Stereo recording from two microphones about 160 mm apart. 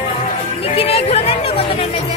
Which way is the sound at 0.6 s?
35° left (ahead or behind).